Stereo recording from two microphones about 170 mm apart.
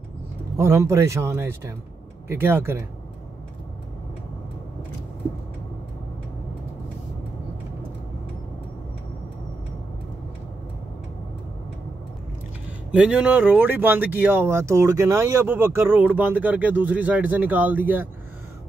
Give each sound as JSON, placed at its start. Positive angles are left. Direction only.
{"t": 0.6, "sound": "speech", "side_deg": -15}
{"t": 12.9, "sound": "speech", "side_deg": -5}